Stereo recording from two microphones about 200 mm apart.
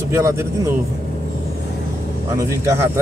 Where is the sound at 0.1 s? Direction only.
15° right (ahead or behind).